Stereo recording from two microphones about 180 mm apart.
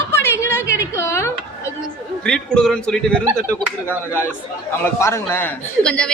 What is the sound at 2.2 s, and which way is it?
A woman's voice, 5° left (ahead or behind).